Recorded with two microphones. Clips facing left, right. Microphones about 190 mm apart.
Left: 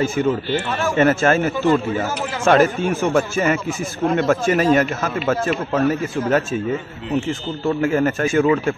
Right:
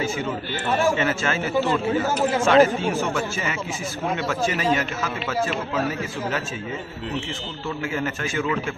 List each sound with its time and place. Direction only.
0.0 s a man's voice: 50° left (ahead or behind)